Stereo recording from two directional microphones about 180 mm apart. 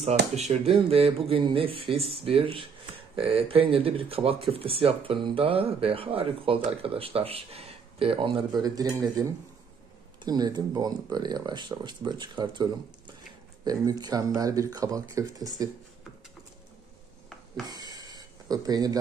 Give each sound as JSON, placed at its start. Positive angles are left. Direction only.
{"t": 0.4, "sound": "speech", "side_deg": -35}
{"t": 13.7, "sound": "speech", "side_deg": -20}
{"t": 17.6, "sound": "a sound", "side_deg": -20}